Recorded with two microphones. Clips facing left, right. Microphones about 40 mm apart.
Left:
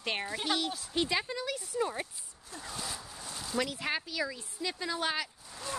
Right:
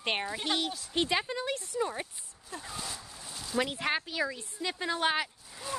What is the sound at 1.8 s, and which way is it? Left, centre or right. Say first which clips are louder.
Speech: left 1 dB; centre.